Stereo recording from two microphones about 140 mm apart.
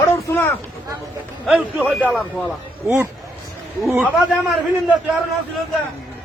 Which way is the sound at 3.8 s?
Centre (ahead or behind).